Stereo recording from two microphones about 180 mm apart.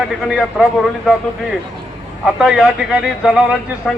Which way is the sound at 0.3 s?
Centre (ahead or behind).